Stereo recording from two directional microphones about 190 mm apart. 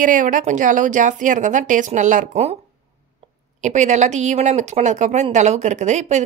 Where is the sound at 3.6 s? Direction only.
40° right (ahead or behind).